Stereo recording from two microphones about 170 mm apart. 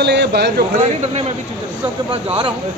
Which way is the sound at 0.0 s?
75° right (ahead or behind).